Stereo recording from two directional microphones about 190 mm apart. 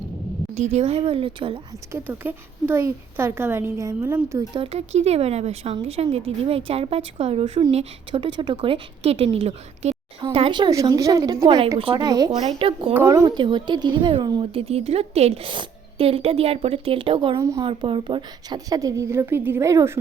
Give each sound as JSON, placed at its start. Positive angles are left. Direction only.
{"t": 0.5, "sound": "a woman's voice", "side_deg": -35}
{"t": 1.9, "sound": "speech", "side_deg": -10}
{"t": 4.9, "sound": "a woman's voice", "side_deg": -35}
{"t": 12.9, "sound": "a woman's voice", "side_deg": -10}
{"t": 17.4, "sound": "speech", "side_deg": -15}
{"t": 17.7, "sound": "speech", "side_deg": -25}